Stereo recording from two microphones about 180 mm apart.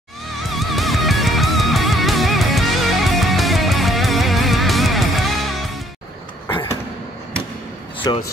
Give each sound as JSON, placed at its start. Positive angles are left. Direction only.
{"t": 0.6, "sound": "music", "side_deg": 0}
{"t": 6.5, "sound": "a sound", "side_deg": 25}
{"t": 8.0, "sound": "speech", "side_deg": 20}